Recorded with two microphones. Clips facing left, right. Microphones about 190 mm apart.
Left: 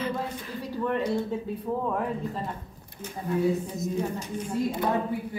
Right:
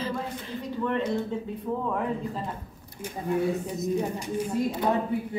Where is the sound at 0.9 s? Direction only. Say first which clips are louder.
Left 1 dB; 10° left (ahead or behind).